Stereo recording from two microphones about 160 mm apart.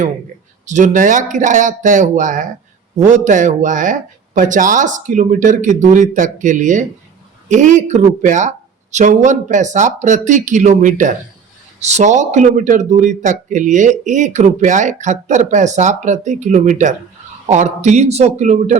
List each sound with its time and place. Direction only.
0.6 s a man's voice: 50° right (ahead or behind)